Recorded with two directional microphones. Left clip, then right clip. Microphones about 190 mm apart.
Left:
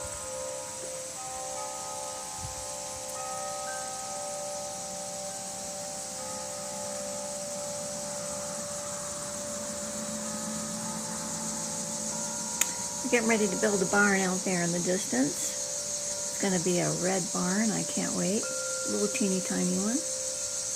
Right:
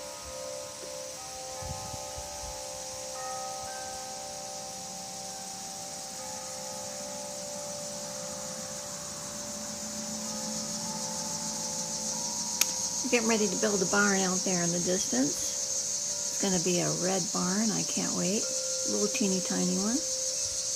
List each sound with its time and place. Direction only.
13.1 s speech: 15° right (ahead or behind)
16.4 s speech: 15° right (ahead or behind)